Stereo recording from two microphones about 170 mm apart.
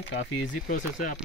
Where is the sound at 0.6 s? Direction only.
55° left (ahead or behind).